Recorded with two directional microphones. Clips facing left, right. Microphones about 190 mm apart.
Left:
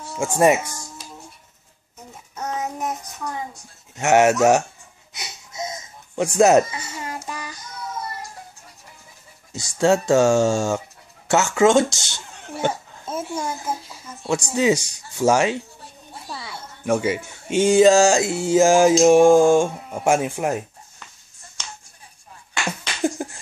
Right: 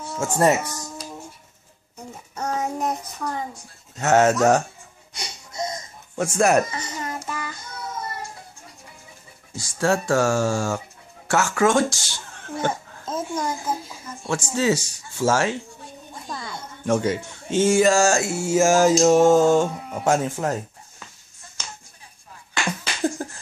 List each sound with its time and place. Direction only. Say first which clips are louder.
0.1 s speech: left 2 dB; 15° left (ahead or behind)
2.3 s child singing: right 2 dB; centre (ahead or behind)
3.9 s speech: left 2 dB; 10° left (ahead or behind)
5.1 s wheeze: right 1 dB; 5° left (ahead or behind)
6.1 s speech: left 4 dB; 15° left (ahead or behind)
6.7 s child singing: right 1 dB; 10° left (ahead or behind)
9.5 s speech: left 4 dB; 20° left (ahead or behind)
22.7 s a sound: left 1 dB; 15° left (ahead or behind)